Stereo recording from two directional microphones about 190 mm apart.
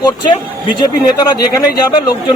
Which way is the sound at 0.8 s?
20° left (ahead or behind).